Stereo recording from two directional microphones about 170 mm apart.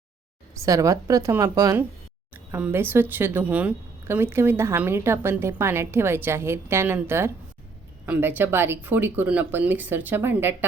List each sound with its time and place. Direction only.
0.6 s a woman's voice: 20° right (ahead or behind)
2.3 s speech: 10° right (ahead or behind)